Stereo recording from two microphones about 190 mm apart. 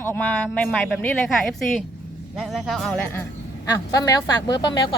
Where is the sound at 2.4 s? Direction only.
Centre (ahead or behind).